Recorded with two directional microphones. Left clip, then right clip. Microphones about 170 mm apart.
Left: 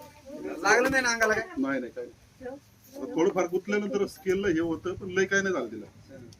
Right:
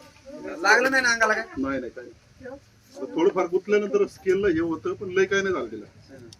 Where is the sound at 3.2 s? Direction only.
25° left (ahead or behind).